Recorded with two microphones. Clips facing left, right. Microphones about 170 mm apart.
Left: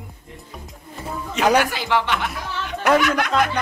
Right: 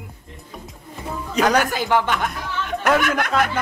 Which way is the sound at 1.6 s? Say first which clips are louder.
Right 2 dB; 45° right (ahead or behind).